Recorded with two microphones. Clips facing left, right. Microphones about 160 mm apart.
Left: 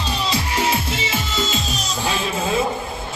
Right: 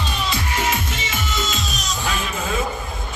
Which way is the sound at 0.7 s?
30° left (ahead or behind).